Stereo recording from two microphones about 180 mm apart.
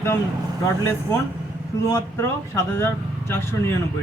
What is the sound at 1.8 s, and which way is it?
Speech, 15° left (ahead or behind).